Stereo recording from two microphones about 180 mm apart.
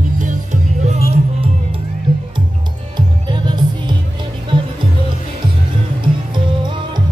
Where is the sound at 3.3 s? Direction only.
25° right (ahead or behind).